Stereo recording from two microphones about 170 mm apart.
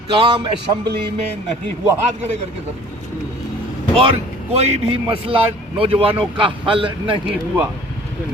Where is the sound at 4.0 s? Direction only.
35° right (ahead or behind).